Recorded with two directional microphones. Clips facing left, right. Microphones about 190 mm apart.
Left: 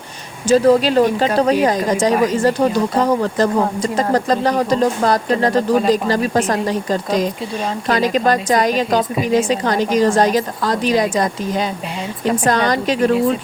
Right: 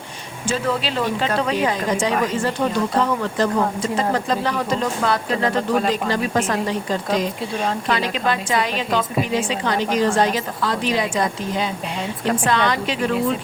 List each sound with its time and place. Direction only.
0.4 s a woman's voice: 40° left (ahead or behind)